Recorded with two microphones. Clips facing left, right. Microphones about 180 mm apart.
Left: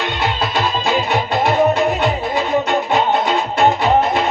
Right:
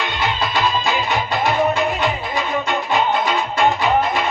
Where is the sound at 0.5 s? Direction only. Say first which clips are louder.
Left 2 dB; 25° left (ahead or behind).